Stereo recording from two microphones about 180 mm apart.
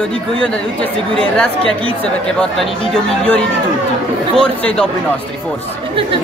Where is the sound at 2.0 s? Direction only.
5° left (ahead or behind).